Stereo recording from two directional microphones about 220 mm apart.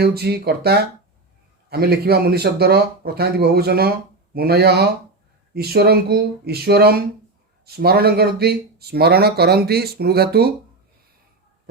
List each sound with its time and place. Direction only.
0.0 s speech: 45° right (ahead or behind)